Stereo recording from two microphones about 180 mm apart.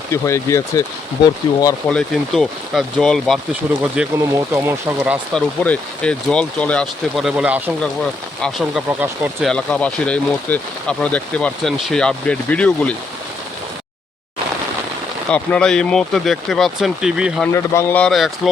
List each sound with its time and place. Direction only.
0.1 s speech: 15° left (ahead or behind)
1.9 s speech: 5° left (ahead or behind)
4.3 s speech: 15° right (ahead or behind)
5.3 s speech: 5° left (ahead or behind)
8.9 s speech: 10° right (ahead or behind)
9.4 s speech: 5° left (ahead or behind)
15.3 s speech: 5° left (ahead or behind)
17.5 s speech: 15° left (ahead or behind)